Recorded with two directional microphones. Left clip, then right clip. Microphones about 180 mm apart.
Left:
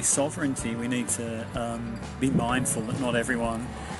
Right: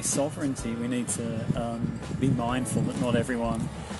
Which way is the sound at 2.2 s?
10° right (ahead or behind).